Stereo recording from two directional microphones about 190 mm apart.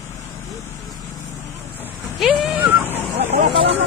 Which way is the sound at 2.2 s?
5° right (ahead or behind).